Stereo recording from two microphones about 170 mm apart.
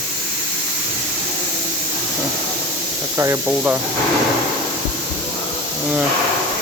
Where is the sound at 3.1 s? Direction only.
20° right (ahead or behind).